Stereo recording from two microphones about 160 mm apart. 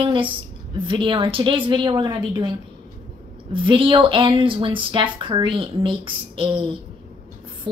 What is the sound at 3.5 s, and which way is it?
Speech, 30° right (ahead or behind).